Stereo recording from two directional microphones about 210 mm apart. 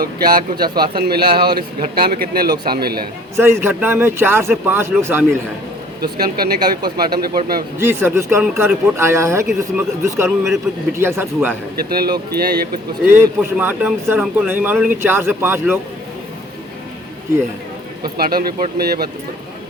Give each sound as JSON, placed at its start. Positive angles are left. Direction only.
{"t": 0.0, "sound": "a man's voice", "side_deg": -45}
{"t": 3.3, "sound": "a man's voice", "side_deg": -10}
{"t": 6.0, "sound": "a man's voice", "side_deg": -45}
{"t": 7.8, "sound": "a man's voice", "side_deg": -10}
{"t": 11.9, "sound": "a man's voice", "side_deg": -45}
{"t": 13.1, "sound": "a man's voice", "side_deg": -10}
{"t": 18.2, "sound": "a man's voice", "side_deg": -45}